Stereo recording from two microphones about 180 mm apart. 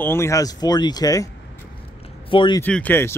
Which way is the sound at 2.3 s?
25° left (ahead or behind).